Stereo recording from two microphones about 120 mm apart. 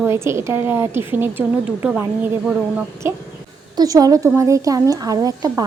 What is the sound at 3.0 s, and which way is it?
Speech, 20° right (ahead or behind).